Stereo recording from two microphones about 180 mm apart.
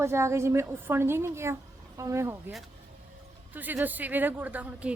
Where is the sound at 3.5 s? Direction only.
10° right (ahead or behind).